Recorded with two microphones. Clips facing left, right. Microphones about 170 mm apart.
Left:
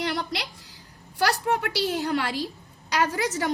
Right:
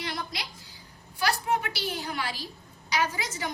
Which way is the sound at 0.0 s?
70° left (ahead or behind).